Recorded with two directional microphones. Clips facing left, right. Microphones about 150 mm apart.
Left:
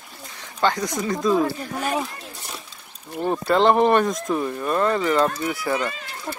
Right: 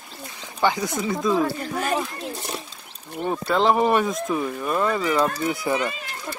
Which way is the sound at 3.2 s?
Centre (ahead or behind).